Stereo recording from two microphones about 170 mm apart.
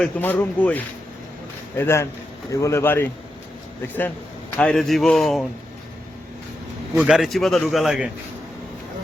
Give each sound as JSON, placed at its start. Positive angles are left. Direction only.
{"t": 0.0, "sound": "speech", "side_deg": 10}
{"t": 1.8, "sound": "speech", "side_deg": 15}
{"t": 4.5, "sound": "a man's voice", "side_deg": 5}
{"t": 6.9, "sound": "a man's voice", "side_deg": -5}